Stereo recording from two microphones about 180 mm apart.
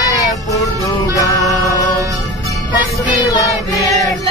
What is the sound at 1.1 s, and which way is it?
Music, 20° left (ahead or behind).